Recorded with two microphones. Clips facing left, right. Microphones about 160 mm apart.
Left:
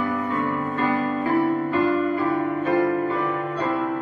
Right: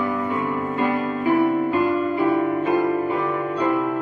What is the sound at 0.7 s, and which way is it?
Music, 15° right (ahead or behind).